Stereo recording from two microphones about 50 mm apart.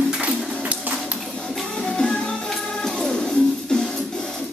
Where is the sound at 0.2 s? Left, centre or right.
Right.